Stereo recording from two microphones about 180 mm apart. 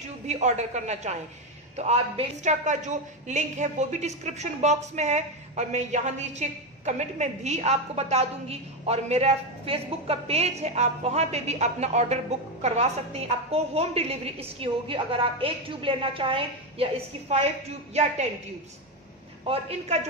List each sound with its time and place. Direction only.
0.3 s a woman's voice: 40° right (ahead or behind)
19.4 s a woman's voice: 35° right (ahead or behind)